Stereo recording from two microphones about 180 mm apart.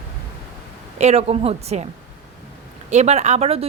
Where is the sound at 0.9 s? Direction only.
35° right (ahead or behind).